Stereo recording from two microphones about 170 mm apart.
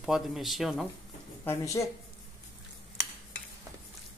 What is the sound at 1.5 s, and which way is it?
Speech, 20° left (ahead or behind).